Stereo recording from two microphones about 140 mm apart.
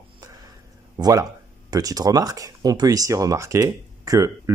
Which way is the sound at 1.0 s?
25° right (ahead or behind).